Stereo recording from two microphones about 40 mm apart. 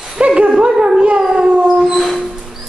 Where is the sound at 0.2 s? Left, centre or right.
Right.